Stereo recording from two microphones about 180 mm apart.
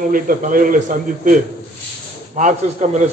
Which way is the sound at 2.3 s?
40° right (ahead or behind).